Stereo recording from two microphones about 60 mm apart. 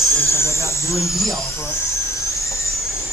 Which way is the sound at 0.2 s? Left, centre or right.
Left.